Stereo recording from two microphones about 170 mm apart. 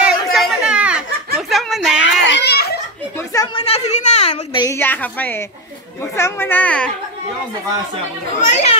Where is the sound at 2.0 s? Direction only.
90° left; by 2.8 s 70° left (ahead or behind).